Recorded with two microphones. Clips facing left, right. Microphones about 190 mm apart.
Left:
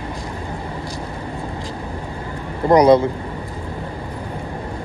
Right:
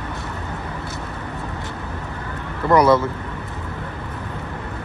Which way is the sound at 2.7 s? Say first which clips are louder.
Left 3 dB; 15° left (ahead or behind).